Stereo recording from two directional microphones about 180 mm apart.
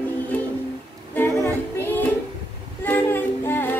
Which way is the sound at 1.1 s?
10° left (ahead or behind).